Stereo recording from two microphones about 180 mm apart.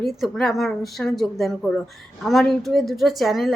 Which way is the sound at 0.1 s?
Centre (ahead or behind).